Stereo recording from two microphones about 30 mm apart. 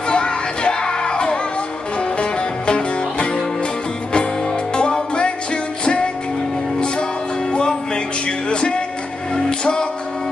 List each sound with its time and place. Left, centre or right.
0.1 s music: left
5.1 s music: left
7.5 s music: left